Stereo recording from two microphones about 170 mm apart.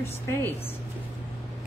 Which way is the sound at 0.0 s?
15° left (ahead or behind).